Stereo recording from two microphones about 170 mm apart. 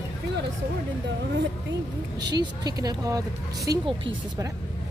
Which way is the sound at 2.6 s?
20° right (ahead or behind).